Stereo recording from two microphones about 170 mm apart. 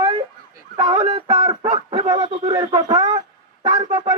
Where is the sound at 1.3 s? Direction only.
20° right (ahead or behind).